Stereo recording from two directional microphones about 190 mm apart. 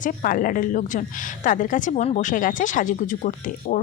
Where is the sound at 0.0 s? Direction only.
45° left (ahead or behind).